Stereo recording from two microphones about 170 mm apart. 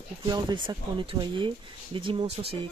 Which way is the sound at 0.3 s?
25° right (ahead or behind).